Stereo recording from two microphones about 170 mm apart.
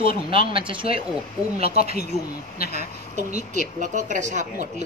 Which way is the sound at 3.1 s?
45° right (ahead or behind).